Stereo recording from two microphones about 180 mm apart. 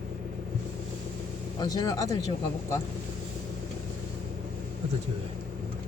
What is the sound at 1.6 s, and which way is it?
Speech, 20° left (ahead or behind).